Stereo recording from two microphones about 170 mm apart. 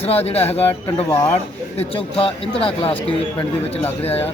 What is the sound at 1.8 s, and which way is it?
Speech, 35° left (ahead or behind).